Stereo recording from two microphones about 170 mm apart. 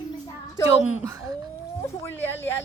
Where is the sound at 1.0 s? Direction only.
20° right (ahead or behind).